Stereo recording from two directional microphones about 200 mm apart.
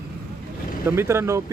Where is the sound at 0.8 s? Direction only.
10° right (ahead or behind).